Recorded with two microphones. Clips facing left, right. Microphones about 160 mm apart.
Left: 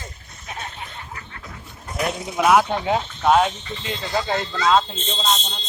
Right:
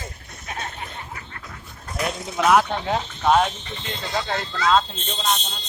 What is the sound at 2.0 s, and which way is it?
Speech, 5° left (ahead or behind).